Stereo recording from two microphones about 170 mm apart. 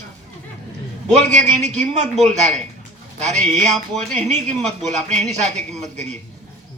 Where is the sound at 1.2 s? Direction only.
45° right (ahead or behind).